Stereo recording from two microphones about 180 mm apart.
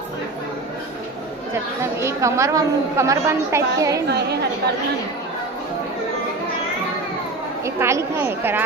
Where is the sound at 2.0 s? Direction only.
15° right (ahead or behind).